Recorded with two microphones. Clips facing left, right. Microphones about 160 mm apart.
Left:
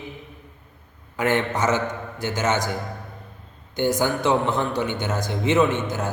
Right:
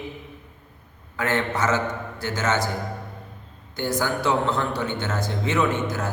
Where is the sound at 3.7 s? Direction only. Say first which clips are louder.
Left 3 dB; 20° left (ahead or behind).